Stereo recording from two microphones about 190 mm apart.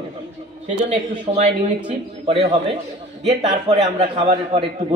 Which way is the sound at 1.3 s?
35° right (ahead or behind).